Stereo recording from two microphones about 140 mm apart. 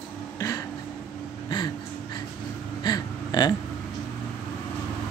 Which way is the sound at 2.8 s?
30° left (ahead or behind).